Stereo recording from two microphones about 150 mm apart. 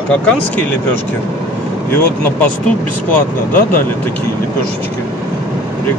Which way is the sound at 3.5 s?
70° left (ahead or behind).